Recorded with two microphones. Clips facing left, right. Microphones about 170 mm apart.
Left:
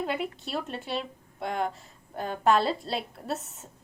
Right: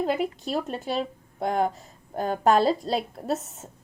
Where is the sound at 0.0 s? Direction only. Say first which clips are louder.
Right 5 dB; 40° right (ahead or behind).